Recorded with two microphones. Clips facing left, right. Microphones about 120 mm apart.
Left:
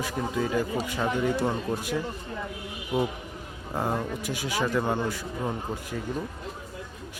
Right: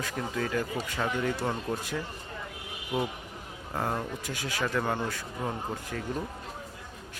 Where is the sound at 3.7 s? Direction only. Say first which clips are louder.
Left 3 dB; 15° left (ahead or behind).